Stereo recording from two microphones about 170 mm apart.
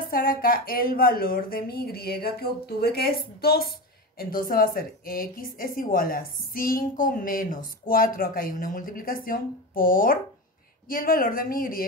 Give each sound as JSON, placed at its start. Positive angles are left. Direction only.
{"t": 0.1, "sound": "a woman's voice", "side_deg": 60}